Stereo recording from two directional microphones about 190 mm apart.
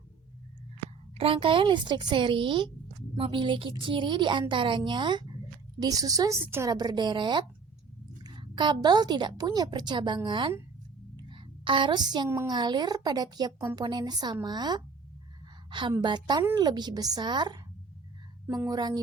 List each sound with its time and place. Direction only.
1.2 s a woman's voice: 30° right (ahead or behind)